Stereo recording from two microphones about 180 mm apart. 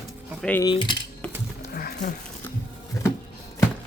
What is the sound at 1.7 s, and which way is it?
Wild animals, 55° left (ahead or behind).